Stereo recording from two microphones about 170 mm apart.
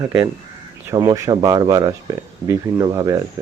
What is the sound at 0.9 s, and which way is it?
Speech, 20° right (ahead or behind).